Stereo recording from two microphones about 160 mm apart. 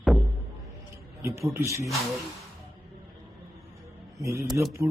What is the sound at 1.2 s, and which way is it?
Speech, 15° right (ahead or behind).